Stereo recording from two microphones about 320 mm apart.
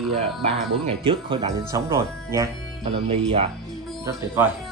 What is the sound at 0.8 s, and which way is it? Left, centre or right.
Speech, centre.